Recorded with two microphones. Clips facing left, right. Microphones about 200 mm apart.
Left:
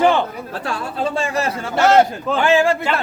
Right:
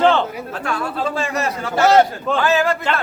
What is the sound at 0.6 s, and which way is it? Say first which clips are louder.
Speech: even; 30° left (ahead or behind).